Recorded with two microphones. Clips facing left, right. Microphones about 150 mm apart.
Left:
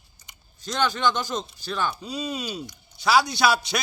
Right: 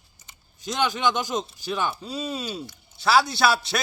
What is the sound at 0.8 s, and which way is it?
Speech, 15° right (ahead or behind).